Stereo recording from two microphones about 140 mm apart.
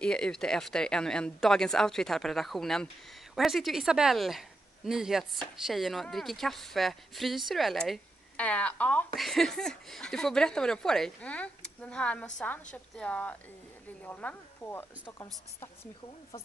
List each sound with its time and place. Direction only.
0.0 s a woman's voice: 5° left (ahead or behind)